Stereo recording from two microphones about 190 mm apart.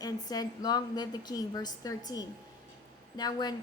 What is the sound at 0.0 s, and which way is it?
A woman's voice, 20° left (ahead or behind).